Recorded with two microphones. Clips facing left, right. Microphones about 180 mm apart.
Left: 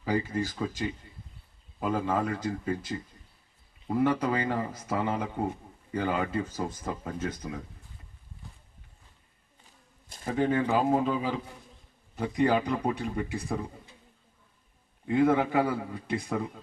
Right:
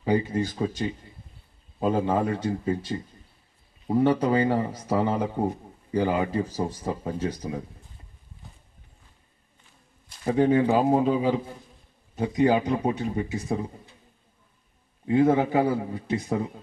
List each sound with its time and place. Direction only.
0.0 s speech: 25° right (ahead or behind)
3.9 s a man's voice: 30° right (ahead or behind)
10.2 s speech: 30° right (ahead or behind)
15.0 s speech: 25° right (ahead or behind)